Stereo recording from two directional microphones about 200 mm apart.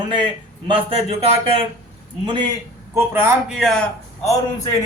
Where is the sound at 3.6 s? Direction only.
Centre (ahead or behind).